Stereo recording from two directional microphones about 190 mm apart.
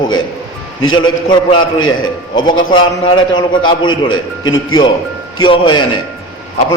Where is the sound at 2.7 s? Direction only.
25° left (ahead or behind).